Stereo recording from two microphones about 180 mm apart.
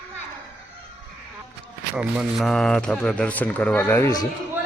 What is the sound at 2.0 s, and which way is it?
A man's voice, 5° right (ahead or behind).